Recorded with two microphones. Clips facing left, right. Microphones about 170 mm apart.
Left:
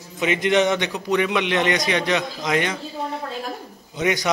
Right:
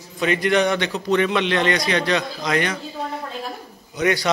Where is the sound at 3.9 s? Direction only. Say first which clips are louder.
Right 2 dB; 20° left (ahead or behind).